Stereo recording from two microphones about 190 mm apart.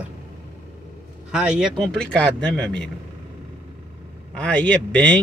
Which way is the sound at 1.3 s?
5° right (ahead or behind).